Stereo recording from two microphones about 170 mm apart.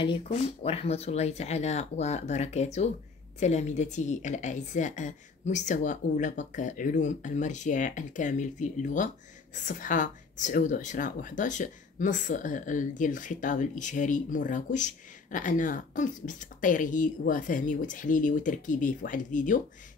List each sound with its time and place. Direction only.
0.3 s speech: 35° left (ahead or behind); by 19.6 s 50° left (ahead or behind)